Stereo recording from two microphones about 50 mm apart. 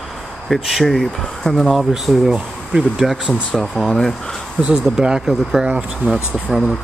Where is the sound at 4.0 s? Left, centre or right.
Centre.